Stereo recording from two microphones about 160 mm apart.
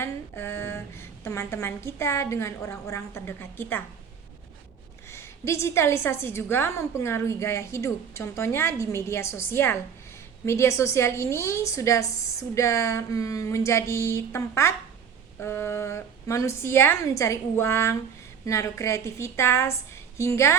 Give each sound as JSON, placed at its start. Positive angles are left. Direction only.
{"t": 0.0, "sound": "a woman's voice", "side_deg": 15}
{"t": 5.1, "sound": "a woman's voice", "side_deg": 15}